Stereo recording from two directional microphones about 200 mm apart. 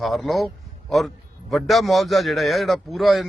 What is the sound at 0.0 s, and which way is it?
A man's voice, centre (ahead or behind).